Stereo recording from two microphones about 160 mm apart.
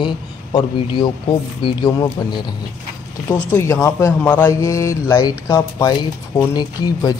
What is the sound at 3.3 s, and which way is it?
Speech, 15° left (ahead or behind).